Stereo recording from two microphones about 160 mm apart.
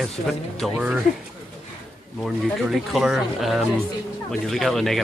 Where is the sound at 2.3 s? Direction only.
Centre (ahead or behind).